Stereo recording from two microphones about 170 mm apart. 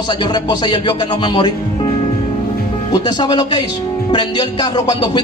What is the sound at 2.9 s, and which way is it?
Music, 25° left (ahead or behind).